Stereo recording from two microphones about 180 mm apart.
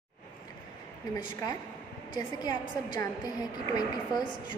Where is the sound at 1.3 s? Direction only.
20° left (ahead or behind).